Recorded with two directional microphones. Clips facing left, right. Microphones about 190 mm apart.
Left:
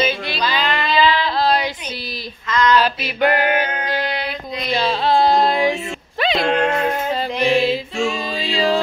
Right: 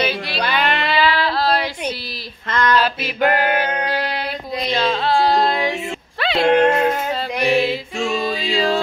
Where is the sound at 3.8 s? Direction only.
40° right (ahead or behind).